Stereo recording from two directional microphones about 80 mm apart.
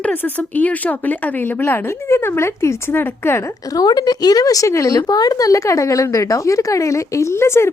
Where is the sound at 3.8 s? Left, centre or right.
Left.